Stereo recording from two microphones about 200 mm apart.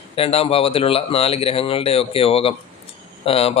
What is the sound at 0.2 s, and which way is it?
A man's voice, 30° left (ahead or behind).